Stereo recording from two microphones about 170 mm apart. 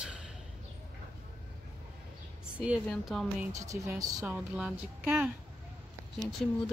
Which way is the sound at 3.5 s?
20° right (ahead or behind).